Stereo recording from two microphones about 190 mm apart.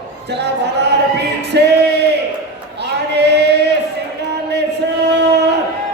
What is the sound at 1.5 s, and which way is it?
Music, 60° right (ahead or behind).